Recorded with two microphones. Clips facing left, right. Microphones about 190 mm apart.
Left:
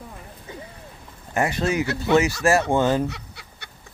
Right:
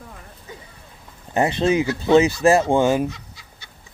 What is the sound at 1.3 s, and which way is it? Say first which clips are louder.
Speech: right 4 dB; 25° right (ahead or behind).